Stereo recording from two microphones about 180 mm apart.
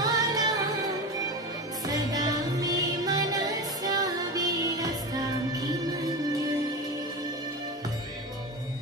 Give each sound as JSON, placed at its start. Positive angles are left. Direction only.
{"t": 0.0, "sound": "music", "side_deg": -20}
{"t": 1.9, "sound": "music", "side_deg": -20}